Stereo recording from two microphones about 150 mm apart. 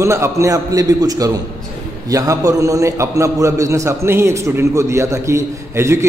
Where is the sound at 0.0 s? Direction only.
20° right (ahead or behind).